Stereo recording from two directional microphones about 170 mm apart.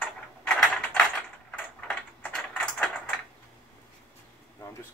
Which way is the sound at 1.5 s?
10° left (ahead or behind).